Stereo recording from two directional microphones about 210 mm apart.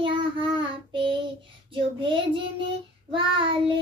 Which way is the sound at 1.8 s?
25° right (ahead or behind).